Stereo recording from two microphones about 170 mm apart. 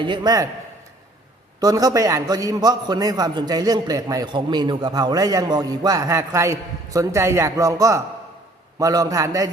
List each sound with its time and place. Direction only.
0.0 s a man's voice: 25° right (ahead or behind)
1.6 s a man's voice: 20° right (ahead or behind)